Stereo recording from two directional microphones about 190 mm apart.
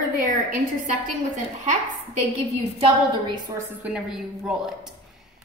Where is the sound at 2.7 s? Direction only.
30° right (ahead or behind).